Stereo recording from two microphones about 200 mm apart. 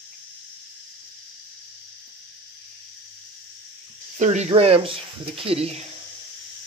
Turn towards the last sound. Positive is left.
turn(degrees=-30)  # may be behind; listen again after turning